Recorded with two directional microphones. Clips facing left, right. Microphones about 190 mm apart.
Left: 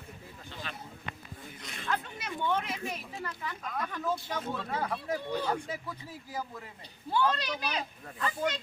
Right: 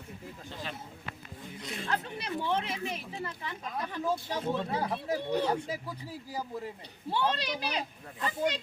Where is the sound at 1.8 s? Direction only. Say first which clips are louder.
Even; 35° right (ahead or behind).